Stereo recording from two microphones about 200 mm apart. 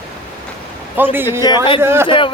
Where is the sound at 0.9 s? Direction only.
10° right (ahead or behind).